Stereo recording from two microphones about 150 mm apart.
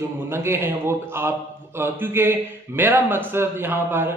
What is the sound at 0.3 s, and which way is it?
A man's voice, 15° right (ahead or behind).